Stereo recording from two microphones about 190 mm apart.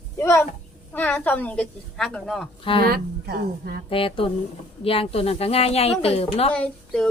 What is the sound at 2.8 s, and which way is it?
Speech, 55° right (ahead or behind).